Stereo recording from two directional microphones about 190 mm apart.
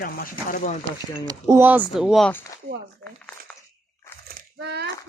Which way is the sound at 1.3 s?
20° right (ahead or behind).